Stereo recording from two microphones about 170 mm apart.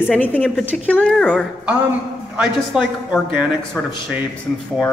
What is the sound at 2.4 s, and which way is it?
Speech, 5° right (ahead or behind).